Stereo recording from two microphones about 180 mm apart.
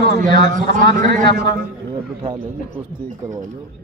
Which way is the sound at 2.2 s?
35° right (ahead or behind).